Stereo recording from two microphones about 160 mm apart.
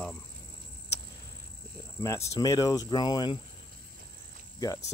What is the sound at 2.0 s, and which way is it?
Speech, 20° left (ahead or behind).